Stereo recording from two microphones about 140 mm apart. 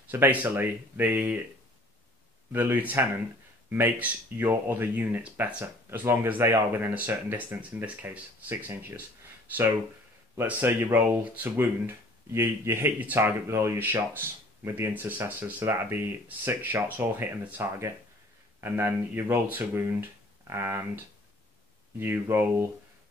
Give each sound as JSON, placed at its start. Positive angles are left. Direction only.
{"t": 0.1, "sound": "speech", "side_deg": -10}
{"t": 2.5, "sound": "speech", "side_deg": -15}
{"t": 10.3, "sound": "speech", "side_deg": -15}